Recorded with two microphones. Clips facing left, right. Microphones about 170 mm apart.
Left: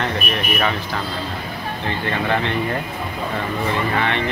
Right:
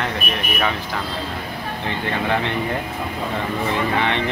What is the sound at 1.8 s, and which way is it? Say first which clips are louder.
Speech: left 1 dB; 15° right (ahead or behind).